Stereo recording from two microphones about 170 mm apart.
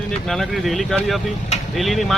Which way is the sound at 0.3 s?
Centre (ahead or behind).